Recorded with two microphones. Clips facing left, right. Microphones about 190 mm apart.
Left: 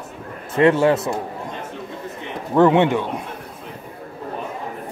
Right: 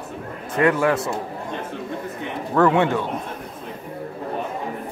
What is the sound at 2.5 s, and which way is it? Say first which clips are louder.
Speech: left 3 dB; 20° left (ahead or behind).